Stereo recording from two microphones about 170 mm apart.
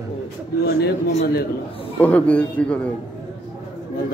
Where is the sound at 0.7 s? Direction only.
70° left (ahead or behind).